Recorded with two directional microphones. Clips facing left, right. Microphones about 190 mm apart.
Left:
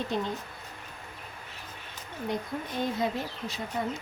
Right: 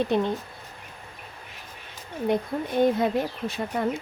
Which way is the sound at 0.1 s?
60° right (ahead or behind).